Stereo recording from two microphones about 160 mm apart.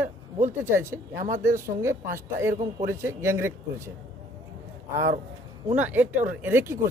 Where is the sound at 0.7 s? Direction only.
15° right (ahead or behind).